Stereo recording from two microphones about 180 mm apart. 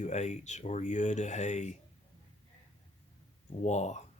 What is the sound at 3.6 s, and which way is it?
Speech, 40° left (ahead or behind).